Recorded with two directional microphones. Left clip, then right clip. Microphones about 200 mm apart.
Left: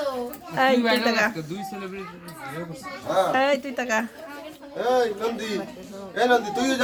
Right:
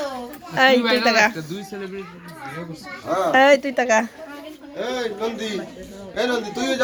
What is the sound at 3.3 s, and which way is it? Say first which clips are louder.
Speech: right 8 dB; 25° right (ahead or behind).